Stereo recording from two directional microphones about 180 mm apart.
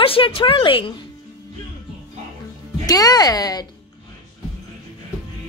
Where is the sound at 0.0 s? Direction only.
30° left (ahead or behind).